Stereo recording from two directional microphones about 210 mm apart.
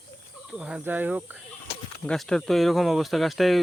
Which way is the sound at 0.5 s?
5° right (ahead or behind).